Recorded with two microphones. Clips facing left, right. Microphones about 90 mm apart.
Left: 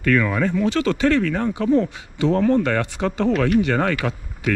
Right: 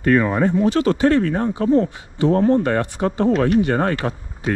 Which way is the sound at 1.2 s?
35° right (ahead or behind).